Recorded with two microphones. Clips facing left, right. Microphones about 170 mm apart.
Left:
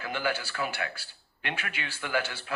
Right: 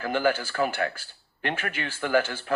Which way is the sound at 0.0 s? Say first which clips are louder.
Right 7 dB; 45° right (ahead or behind).